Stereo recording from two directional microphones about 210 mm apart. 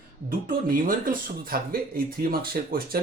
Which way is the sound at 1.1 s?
45° right (ahead or behind).